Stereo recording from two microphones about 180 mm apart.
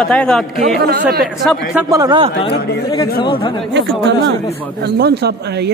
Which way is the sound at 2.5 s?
65° left (ahead or behind).